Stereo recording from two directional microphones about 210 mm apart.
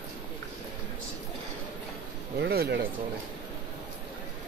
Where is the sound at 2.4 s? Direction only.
50° right (ahead or behind).